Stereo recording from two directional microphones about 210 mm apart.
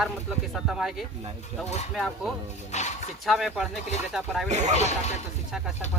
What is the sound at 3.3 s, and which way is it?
Speech, centre (ahead or behind).